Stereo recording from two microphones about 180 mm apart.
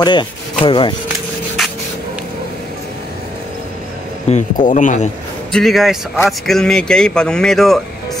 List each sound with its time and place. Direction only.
0.0 s speech: 25° left (ahead or behind)
4.3 s speech: 45° left (ahead or behind)
5.5 s speech: centre (ahead or behind)